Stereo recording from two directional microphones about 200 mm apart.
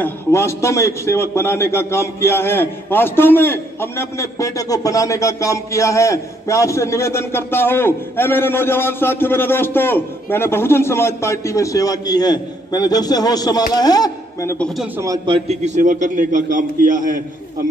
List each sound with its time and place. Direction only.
0.0 s a man's voice: 10° left (ahead or behind)
15.0 s a man's voice: 20° right (ahead or behind); by 17.2 s 40° right (ahead or behind)